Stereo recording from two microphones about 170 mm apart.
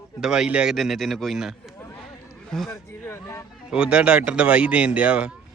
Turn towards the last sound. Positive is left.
turn(degrees=-5)  # may be behind; listen again after turning